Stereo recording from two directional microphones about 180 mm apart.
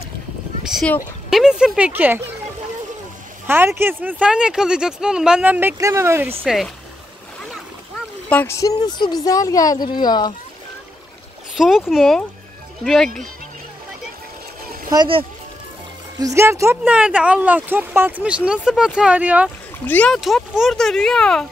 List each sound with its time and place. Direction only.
0.7 s a sound: centre (ahead or behind)
1.3 s speech: 5° right (ahead or behind)
3.4 s speech: 15° right (ahead or behind)
6.4 s speech: centre (ahead or behind)
8.3 s speech: 10° left (ahead or behind)
11.5 s speech: centre (ahead or behind)
14.9 s speech: 25° right (ahead or behind); by 19.5 s 10° right (ahead or behind)
19.9 s speech: 5° left (ahead or behind)